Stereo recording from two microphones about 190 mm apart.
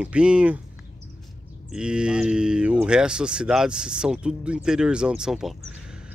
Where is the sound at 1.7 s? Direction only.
5° right (ahead or behind).